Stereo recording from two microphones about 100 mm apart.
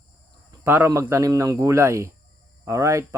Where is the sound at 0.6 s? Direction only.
20° right (ahead or behind).